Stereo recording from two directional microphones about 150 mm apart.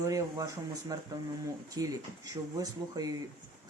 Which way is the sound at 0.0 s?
20° right (ahead or behind).